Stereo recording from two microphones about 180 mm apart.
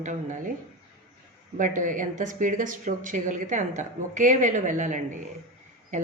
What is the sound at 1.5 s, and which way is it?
Speech, 45° right (ahead or behind).